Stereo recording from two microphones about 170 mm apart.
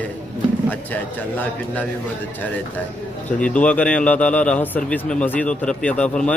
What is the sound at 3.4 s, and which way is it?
A man's voice, 5° left (ahead or behind).